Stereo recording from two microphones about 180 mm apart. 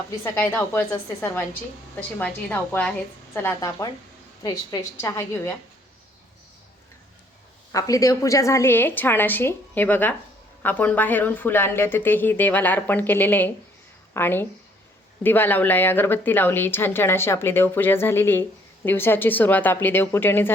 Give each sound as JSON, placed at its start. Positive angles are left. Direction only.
{"t": 0.3, "sound": "speech", "side_deg": 15}
{"t": 7.7, "sound": "a woman's voice", "side_deg": 20}